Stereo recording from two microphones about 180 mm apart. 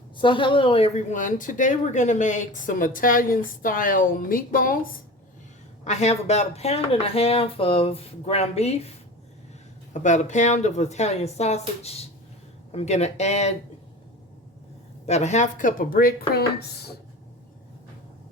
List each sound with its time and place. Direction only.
0.2 s a woman's voice: 25° left (ahead or behind); by 4.9 s 50° left (ahead or behind)
5.8 s speech: 40° left (ahead or behind)
9.9 s speech: 40° left (ahead or behind)
15.0 s a woman's voice: 40° left (ahead or behind); by 16.9 s 60° left (ahead or behind)